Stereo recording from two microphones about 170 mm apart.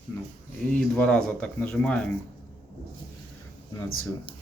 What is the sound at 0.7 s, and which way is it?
Speech, 5° left (ahead or behind).